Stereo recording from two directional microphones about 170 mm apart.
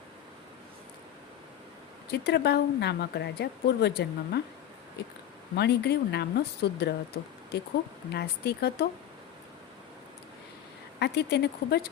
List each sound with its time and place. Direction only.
2.0 s speech: 75° left (ahead or behind)
5.5 s speech: 75° left (ahead or behind)
11.0 s speech: 75° left (ahead or behind)